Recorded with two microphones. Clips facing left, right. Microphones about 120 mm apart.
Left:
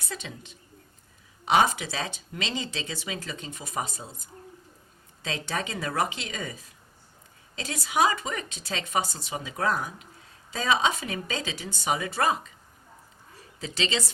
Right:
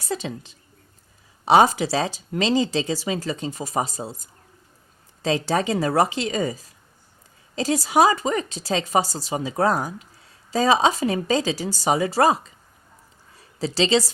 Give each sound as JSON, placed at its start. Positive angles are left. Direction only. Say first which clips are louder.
{"t": 0.0, "sound": "speech", "louder": "right 10 dB", "side_deg": -35}
{"t": 13.6, "sound": "speech", "louder": "right 10 dB", "side_deg": -35}